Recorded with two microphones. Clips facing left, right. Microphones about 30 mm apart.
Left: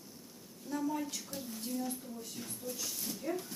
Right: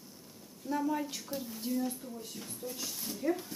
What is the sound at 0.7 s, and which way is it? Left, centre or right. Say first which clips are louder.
Speech: right 3 dB; centre.